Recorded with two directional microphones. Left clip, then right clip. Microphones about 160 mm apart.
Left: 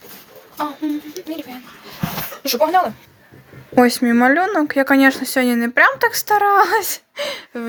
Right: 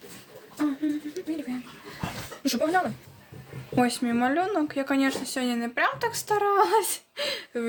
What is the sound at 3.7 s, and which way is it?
Speech, 45° left (ahead or behind).